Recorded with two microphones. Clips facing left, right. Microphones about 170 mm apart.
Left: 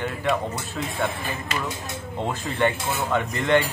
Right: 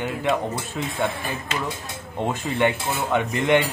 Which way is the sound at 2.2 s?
15° right (ahead or behind).